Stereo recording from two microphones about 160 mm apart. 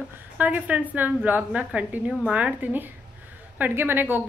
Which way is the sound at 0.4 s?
10° right (ahead or behind).